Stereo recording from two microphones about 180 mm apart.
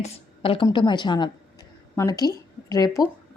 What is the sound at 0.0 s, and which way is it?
A woman's voice, 30° left (ahead or behind).